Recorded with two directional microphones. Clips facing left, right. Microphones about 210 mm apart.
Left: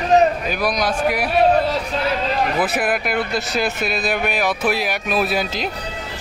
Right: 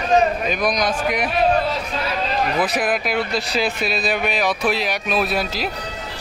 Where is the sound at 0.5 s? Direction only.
5° left (ahead or behind).